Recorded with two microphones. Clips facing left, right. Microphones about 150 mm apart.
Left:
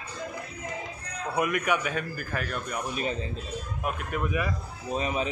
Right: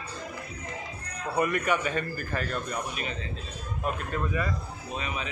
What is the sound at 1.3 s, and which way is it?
A man's voice, 5° left (ahead or behind).